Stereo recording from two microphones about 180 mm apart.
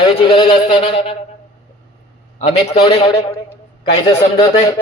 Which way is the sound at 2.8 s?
25° left (ahead or behind).